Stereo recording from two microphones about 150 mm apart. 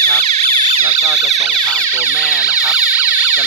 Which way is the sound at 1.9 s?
10° right (ahead or behind).